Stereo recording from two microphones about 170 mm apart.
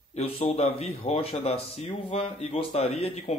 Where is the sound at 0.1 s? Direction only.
35° left (ahead or behind).